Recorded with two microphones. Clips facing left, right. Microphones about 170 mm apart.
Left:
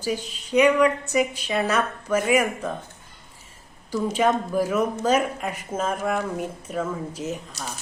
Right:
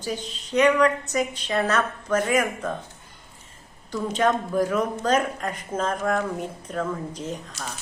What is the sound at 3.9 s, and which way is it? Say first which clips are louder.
A woman's voice: left 1 dB; 10° left (ahead or behind).